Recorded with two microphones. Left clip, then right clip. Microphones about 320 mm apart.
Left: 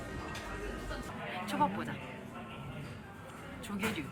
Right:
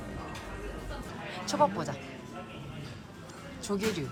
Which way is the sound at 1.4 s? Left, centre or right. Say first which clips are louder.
Right 6 dB; centre.